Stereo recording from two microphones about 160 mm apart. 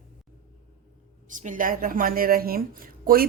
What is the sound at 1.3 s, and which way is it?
A woman's voice, 55° right (ahead or behind).